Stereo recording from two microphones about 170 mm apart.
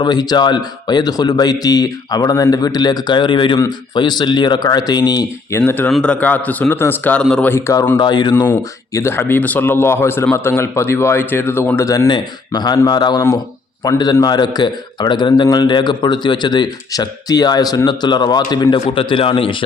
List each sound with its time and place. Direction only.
0.0 s a man's voice: 25° left (ahead or behind); by 7.5 s 5° left (ahead or behind)
7.5 s a man's voice: 15° left (ahead or behind)
8.4 s a man's voice: 15° left (ahead or behind)